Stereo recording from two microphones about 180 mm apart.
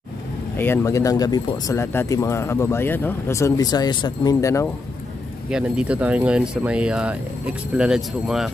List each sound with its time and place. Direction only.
0.6 s speech: 15° left (ahead or behind)
5.5 s speech: 5° right (ahead or behind)